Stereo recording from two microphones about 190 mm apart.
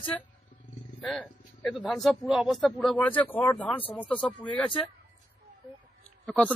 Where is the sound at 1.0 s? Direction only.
Centre (ahead or behind).